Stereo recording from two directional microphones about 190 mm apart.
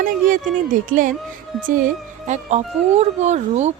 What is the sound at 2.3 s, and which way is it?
Speech, 35° right (ahead or behind).